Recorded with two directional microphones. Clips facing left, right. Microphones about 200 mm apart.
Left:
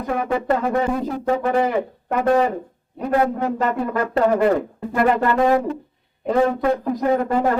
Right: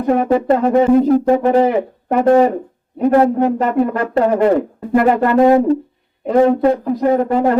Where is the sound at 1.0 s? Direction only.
40° right (ahead or behind).